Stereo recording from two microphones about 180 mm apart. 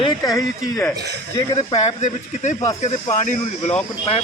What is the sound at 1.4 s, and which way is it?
Speech, 35° left (ahead or behind).